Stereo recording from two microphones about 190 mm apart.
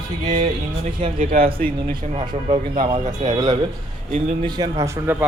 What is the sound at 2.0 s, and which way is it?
Speech, 35° right (ahead or behind).